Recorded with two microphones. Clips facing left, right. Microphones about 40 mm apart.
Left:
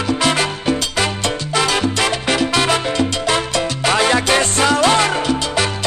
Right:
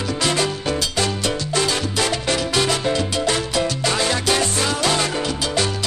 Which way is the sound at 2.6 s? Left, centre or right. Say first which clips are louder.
Left 3 dB; left.